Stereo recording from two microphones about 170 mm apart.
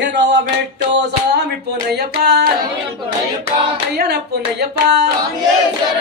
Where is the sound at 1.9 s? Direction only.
75° right (ahead or behind).